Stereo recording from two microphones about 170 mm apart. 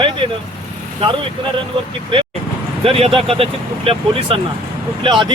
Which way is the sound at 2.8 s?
35° right (ahead or behind).